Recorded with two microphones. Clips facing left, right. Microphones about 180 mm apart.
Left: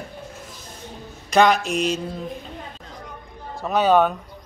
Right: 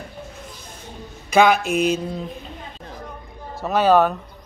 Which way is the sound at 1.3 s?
5° right (ahead or behind).